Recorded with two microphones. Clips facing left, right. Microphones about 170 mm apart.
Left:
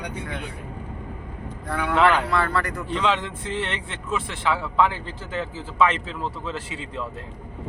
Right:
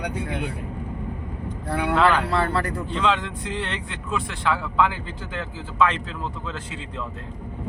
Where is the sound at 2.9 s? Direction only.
Centre (ahead or behind).